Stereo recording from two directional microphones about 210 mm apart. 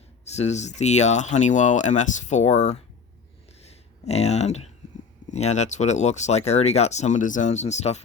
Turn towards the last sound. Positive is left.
turn(degrees=30)  # may be behind; listen again after turning